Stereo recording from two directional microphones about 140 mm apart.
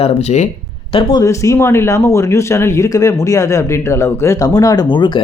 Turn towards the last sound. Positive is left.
turn(degrees=30)  # may be behind; listen again after turning